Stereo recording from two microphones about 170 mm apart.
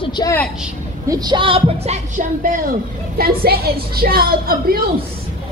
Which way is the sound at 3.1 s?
65° right (ahead or behind).